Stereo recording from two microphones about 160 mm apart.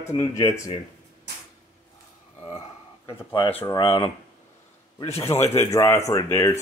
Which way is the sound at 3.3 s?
30° left (ahead or behind).